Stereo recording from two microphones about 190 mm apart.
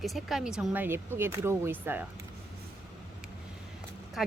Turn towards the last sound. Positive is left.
turn(degrees=0)  # may be behind; listen again after turning